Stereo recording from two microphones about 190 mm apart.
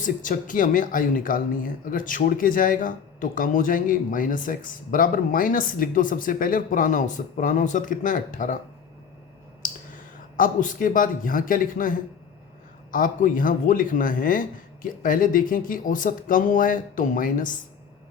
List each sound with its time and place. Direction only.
0.0 s speech: 45° left (ahead or behind)
9.6 s speech: 45° left (ahead or behind)